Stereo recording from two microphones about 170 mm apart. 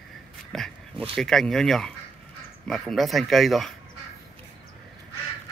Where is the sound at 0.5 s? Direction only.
Centre (ahead or behind).